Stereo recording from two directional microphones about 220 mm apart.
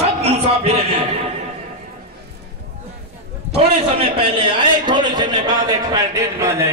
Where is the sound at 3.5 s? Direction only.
25° right (ahead or behind).